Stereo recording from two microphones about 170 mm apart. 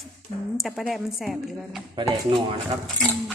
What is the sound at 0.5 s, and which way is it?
Speech, centre (ahead or behind).